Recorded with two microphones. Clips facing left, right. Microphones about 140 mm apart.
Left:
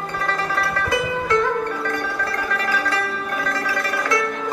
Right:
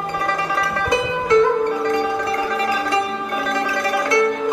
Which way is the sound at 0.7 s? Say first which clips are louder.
Right 2 dB; 25° right (ahead or behind).